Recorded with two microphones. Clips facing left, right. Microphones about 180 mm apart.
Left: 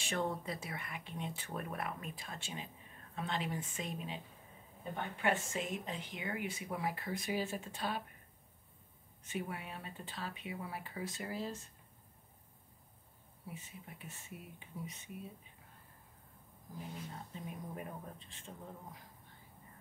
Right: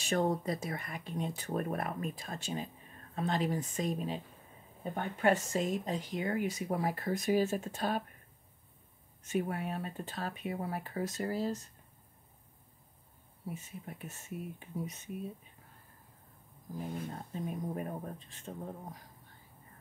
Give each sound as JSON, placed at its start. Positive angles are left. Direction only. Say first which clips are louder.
{"t": 0.0, "sound": "speech", "louder": "right 7 dB", "side_deg": -40}
{"t": 9.2, "sound": "speech", "louder": "right 8 dB", "side_deg": -45}
{"t": 13.7, "sound": "speech", "louder": "right 6 dB", "side_deg": -45}
{"t": 16.9, "sound": "speech", "louder": "right 7 dB", "side_deg": -50}